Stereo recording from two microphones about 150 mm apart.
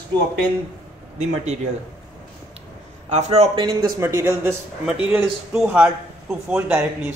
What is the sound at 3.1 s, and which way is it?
Speech, 45° right (ahead or behind).